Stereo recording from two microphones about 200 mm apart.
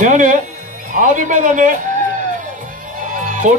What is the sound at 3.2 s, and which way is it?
Music, 40° right (ahead or behind).